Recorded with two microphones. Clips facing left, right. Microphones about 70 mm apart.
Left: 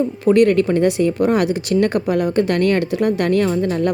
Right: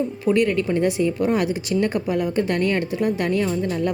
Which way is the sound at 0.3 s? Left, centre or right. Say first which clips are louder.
Left 6 dB; left.